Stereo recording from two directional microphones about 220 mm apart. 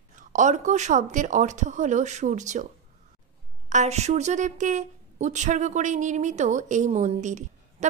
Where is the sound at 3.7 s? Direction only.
30° right (ahead or behind).